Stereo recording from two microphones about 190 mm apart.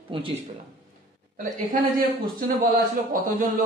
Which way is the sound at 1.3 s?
45° right (ahead or behind).